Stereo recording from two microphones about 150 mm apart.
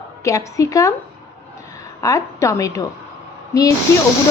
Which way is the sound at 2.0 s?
20° left (ahead or behind).